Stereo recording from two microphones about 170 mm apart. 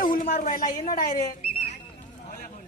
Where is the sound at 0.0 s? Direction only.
55° left (ahead or behind).